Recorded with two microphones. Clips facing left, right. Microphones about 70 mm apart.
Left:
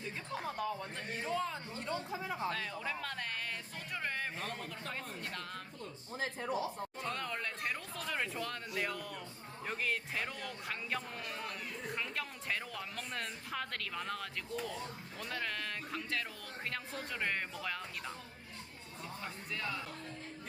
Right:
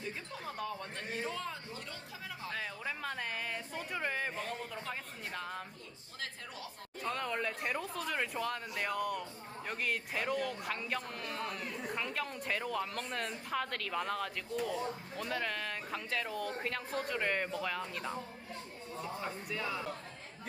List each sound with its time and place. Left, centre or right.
0.4 s a man's voice: centre
1.7 s speech: left
2.5 s a man's voice: centre
6.1 s speech: left
7.1 s a man's voice: centre
19.2 s speech: centre